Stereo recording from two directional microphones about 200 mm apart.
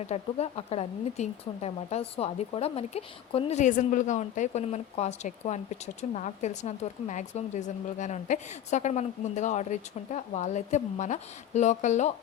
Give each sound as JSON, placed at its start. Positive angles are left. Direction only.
{"t": 0.0, "sound": "speech", "side_deg": 30}